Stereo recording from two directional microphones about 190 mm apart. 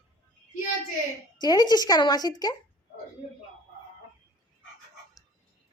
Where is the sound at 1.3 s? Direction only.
20° left (ahead or behind).